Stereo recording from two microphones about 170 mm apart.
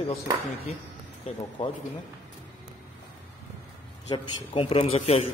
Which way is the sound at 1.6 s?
40° left (ahead or behind).